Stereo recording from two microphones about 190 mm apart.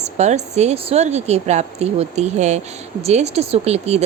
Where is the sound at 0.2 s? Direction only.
35° right (ahead or behind).